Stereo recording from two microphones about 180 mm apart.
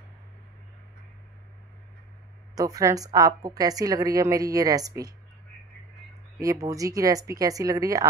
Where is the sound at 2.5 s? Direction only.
20° right (ahead or behind).